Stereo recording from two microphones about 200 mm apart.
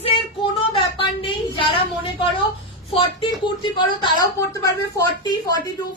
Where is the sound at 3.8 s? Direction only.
20° left (ahead or behind).